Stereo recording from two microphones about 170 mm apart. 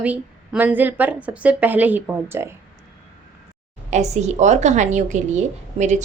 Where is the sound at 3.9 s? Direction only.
40° right (ahead or behind).